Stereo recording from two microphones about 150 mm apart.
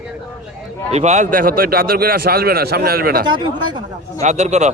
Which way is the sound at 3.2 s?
30° right (ahead or behind).